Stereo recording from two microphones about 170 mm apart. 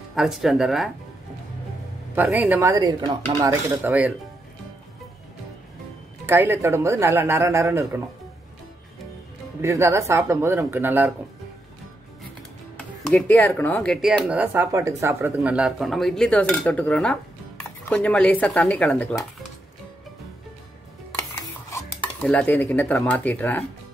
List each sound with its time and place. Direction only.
0.1 s speech: centre (ahead or behind)
2.1 s speech: 10° right (ahead or behind)
2.7 s speech: 25° right (ahead or behind)
6.2 s speech: 15° right (ahead or behind)
9.6 s speech: 15° right (ahead or behind)
12.7 s speech: 5° left (ahead or behind)
14.0 s speech: 5° right (ahead or behind)
21.2 s stir: 15° left (ahead or behind)
22.2 s speech: 5° left (ahead or behind)